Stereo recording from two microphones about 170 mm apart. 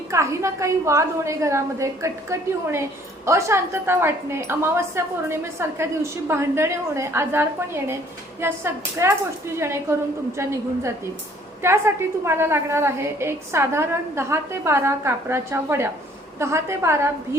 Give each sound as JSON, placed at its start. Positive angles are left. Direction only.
{"t": 0.1, "sound": "a woman's voice", "side_deg": -15}